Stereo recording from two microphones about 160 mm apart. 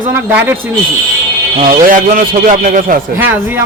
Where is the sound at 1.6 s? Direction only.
55° right (ahead or behind).